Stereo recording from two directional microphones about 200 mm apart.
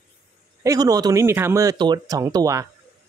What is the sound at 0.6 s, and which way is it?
Speech, 20° right (ahead or behind).